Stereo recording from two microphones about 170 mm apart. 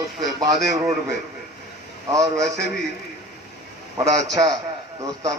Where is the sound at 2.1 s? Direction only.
20° right (ahead or behind).